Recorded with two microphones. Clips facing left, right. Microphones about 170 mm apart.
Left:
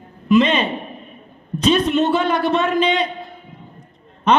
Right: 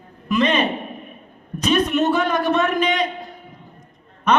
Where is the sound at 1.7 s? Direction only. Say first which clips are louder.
Left 2 dB; 30° left (ahead or behind).